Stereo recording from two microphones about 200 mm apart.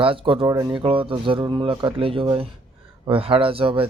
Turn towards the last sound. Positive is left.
turn(degrees=-25)  # may be behind; listen again after turning